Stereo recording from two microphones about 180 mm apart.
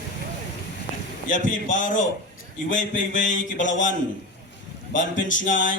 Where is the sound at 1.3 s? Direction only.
45° left (ahead or behind).